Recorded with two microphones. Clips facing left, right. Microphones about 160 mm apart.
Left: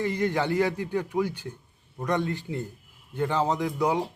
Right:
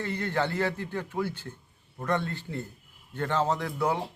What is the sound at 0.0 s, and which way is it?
Speech, 15° left (ahead or behind).